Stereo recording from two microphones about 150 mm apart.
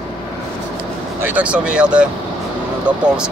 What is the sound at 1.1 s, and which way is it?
Speech, 10° right (ahead or behind).